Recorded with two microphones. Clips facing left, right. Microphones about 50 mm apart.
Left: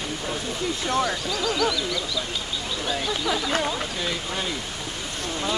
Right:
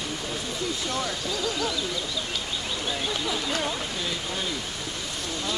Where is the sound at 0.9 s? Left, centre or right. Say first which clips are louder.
Left 5 dB; left.